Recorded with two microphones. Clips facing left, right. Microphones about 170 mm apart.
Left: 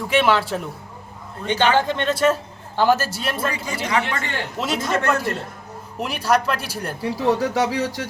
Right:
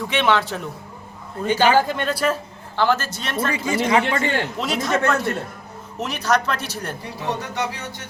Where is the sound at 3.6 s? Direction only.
25° right (ahead or behind).